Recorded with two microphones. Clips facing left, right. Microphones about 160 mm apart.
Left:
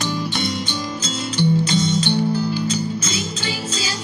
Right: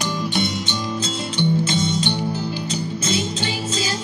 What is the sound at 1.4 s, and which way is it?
Music, 20° right (ahead or behind).